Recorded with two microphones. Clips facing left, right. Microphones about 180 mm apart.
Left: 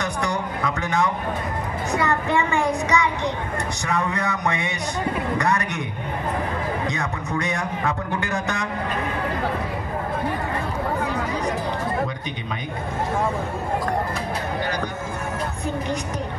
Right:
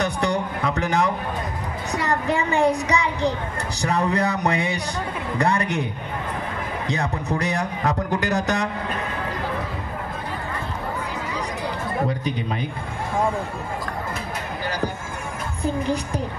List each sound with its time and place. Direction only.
0.0 s a sound: 35° right (ahead or behind)
1.9 s a woman's voice: 35° right (ahead or behind)
6.9 s a woman's voice: 35° right (ahead or behind)